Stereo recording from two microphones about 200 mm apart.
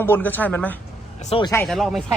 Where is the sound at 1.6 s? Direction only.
Centre (ahead or behind).